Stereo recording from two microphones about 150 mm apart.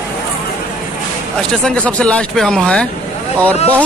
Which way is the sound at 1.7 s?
5° left (ahead or behind).